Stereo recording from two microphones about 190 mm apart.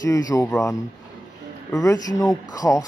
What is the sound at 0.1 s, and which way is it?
Speech, 20° left (ahead or behind).